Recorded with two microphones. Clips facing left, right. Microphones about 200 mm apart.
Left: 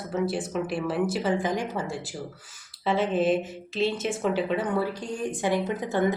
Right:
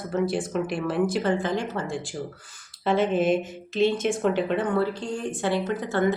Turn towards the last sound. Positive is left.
turn(degrees=15)  # may be behind; listen again after turning